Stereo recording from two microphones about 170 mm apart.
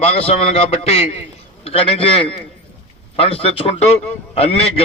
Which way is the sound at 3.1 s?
35° left (ahead or behind).